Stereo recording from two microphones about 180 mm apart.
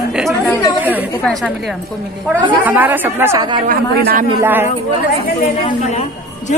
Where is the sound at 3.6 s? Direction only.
55° right (ahead or behind).